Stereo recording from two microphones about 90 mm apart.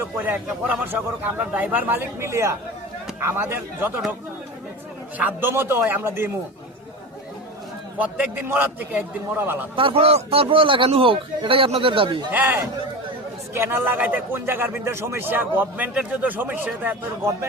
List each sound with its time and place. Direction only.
0.2 s a man's voice: 20° right (ahead or behind)
5.1 s a man's voice: 20° right (ahead or behind)
7.9 s a man's voice: 15° right (ahead or behind)
9.7 s a man's voice: 80° right
12.3 s a man's voice: 20° right (ahead or behind)